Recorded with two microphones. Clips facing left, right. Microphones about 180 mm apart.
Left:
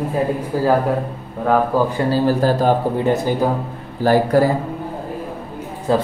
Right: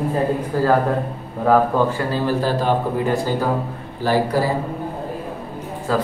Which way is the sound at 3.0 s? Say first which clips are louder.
Left 3 dB; 20° left (ahead or behind).